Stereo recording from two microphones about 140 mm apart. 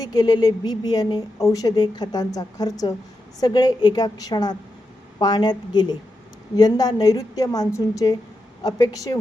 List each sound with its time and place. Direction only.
0.0 s a woman's voice: 30° left (ahead or behind)